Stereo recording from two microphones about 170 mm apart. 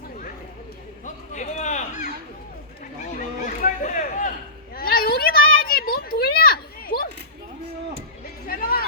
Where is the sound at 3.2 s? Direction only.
50° left (ahead or behind).